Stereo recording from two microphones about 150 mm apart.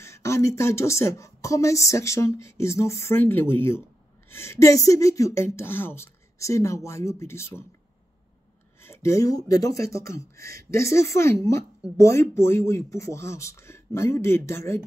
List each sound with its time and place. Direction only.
0.0 s speech: 20° left (ahead or behind)
8.8 s speech: 20° left (ahead or behind)